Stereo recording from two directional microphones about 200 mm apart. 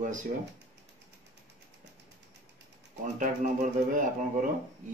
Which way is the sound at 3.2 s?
40° right (ahead or behind).